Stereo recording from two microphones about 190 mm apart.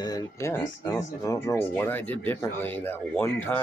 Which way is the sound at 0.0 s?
20° left (ahead or behind).